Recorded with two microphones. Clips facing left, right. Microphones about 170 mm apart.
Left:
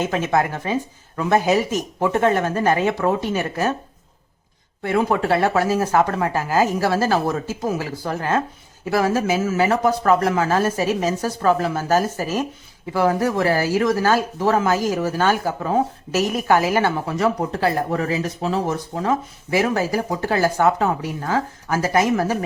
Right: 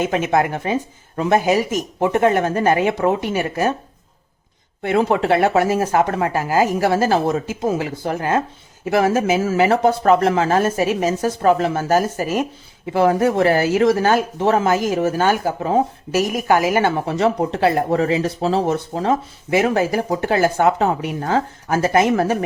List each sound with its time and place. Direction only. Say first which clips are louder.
0.0 s speech: right 2 dB; 20° right (ahead or behind)
4.8 s speech: right 2 dB; 25° right (ahead or behind)